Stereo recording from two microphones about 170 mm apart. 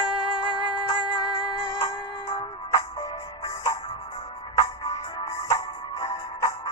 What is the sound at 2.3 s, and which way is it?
Music, 20° left (ahead or behind).